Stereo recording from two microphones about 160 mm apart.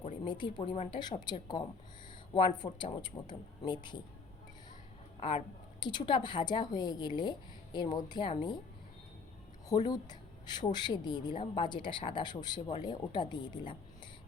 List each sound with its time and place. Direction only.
0.0 s a woman's voice: 30° left (ahead or behind)
5.8 s a woman's voice: 30° left (ahead or behind)
9.6 s a woman's voice: 25° left (ahead or behind)